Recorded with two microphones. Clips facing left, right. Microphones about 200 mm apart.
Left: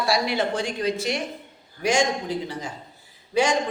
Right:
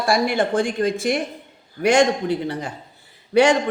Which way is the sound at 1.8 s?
60° right (ahead or behind).